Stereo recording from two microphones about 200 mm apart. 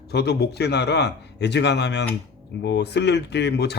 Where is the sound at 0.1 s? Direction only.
55° left (ahead or behind).